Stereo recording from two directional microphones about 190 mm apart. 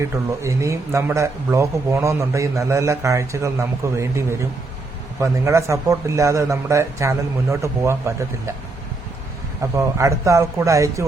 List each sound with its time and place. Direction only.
0.0 s speech: 15° right (ahead or behind)
9.7 s speech: 15° right (ahead or behind)